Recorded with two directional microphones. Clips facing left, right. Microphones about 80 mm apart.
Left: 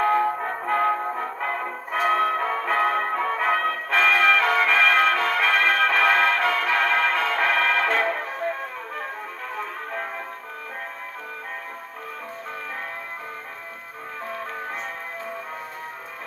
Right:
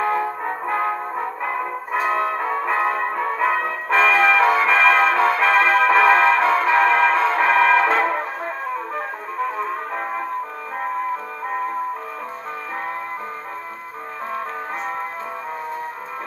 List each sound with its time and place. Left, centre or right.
0.0 s music: centre
1.4 s brass instrument: centre
3.4 s music: centre
4.0 s music: right